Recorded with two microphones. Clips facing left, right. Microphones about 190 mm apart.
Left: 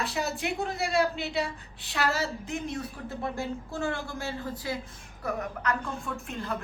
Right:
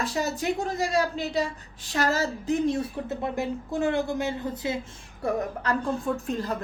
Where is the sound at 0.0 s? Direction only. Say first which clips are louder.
Right 4 dB; 40° right (ahead or behind).